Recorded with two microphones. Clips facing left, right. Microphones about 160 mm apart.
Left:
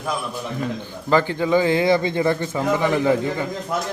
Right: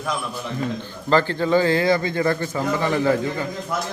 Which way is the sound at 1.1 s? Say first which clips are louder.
Even; 15° left (ahead or behind).